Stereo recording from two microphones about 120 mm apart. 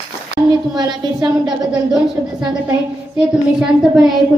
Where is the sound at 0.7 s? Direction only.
35° right (ahead or behind).